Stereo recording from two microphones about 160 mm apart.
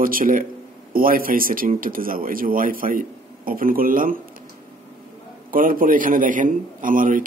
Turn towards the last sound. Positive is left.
turn(degrees=-55)  # may be behind; listen again after turning